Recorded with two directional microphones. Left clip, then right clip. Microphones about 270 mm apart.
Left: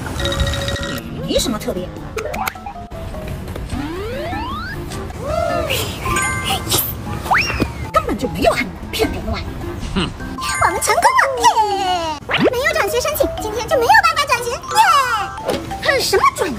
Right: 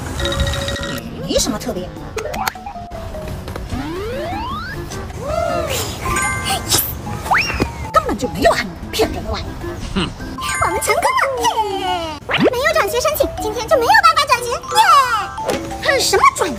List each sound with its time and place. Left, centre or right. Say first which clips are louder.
0.2 s music: right 1 dB; centre
3.7 s music: right 1 dB; centre
6.4 s music: right 1 dB; right
7.2 s music: even; centre
7.9 s music: right 2 dB; centre
9.9 s music: left 1 dB; centre